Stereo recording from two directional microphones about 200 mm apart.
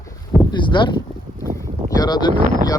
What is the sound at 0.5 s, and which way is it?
Speech, 25° left (ahead or behind).